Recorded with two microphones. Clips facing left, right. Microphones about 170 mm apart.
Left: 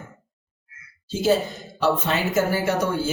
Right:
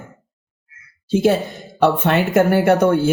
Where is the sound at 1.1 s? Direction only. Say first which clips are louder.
Right 5 dB; 60° right (ahead or behind).